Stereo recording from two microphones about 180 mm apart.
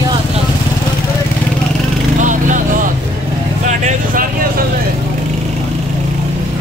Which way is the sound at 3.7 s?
40° right (ahead or behind).